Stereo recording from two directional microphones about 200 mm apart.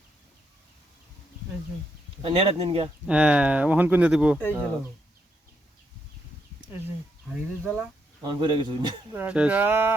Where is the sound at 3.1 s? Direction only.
5° right (ahead or behind).